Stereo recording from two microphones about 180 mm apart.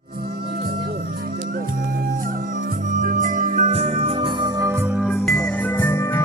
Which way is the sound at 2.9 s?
45° right (ahead or behind).